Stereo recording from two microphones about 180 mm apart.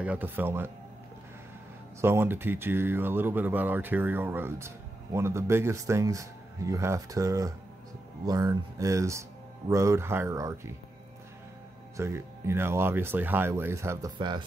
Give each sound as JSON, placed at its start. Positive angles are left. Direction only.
{"t": 0.0, "sound": "speech", "side_deg": -10}
{"t": 2.0, "sound": "speech", "side_deg": -15}
{"t": 12.0, "sound": "speech", "side_deg": -15}